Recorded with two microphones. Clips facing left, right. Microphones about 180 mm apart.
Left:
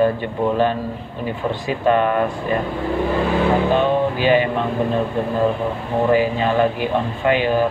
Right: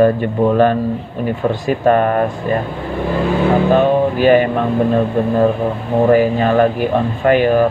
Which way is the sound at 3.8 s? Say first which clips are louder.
Right 5 dB; 50° right (ahead or behind).